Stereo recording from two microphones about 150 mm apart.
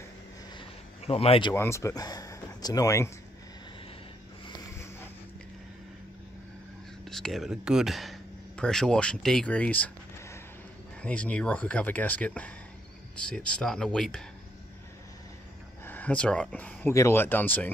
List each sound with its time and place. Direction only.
0.6 s a sound: 40° left (ahead or behind)
1.5 s speech: 15° left (ahead or behind)
4.6 s a sound: 15° left (ahead or behind)
7.1 s speech: 5° left (ahead or behind)
11.0 s speech: 10° left (ahead or behind)
15.8 s speech: 10° left (ahead or behind)